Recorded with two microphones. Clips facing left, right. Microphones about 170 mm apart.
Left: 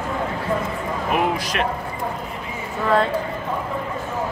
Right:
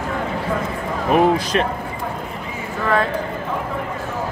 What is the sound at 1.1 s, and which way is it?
Speech, 35° right (ahead or behind).